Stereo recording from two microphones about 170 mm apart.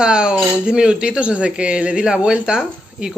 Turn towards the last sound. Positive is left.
turn(degrees=-5)  # may be behind; listen again after turning